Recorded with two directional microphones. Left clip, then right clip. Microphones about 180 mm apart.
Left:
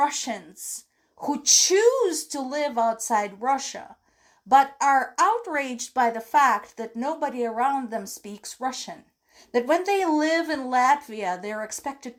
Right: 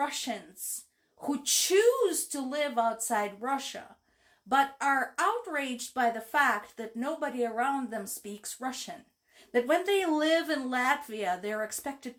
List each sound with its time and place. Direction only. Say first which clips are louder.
0.0 s a woman's voice: left 8 dB; 35° left (ahead or behind)